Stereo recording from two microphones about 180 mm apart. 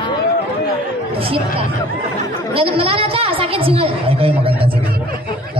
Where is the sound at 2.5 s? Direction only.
30° right (ahead or behind).